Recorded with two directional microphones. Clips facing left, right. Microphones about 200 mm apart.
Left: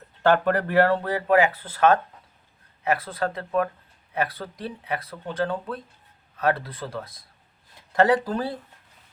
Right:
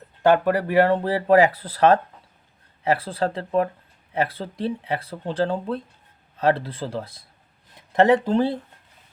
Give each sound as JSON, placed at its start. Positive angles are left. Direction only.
{"t": 0.2, "sound": "speech", "side_deg": -10}
{"t": 1.1, "sound": "speech", "side_deg": -35}